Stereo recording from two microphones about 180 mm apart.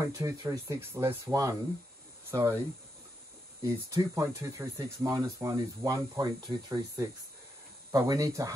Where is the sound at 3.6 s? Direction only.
20° right (ahead or behind).